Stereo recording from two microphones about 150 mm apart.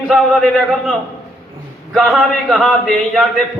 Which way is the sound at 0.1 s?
Centre (ahead or behind).